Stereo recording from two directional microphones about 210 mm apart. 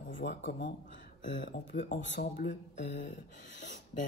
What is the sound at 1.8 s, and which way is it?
Speech, 60° left (ahead or behind).